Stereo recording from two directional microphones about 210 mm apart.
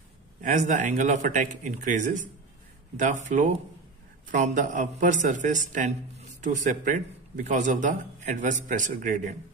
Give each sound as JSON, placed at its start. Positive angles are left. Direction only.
{"t": 0.4, "sound": "a man's voice", "side_deg": -35}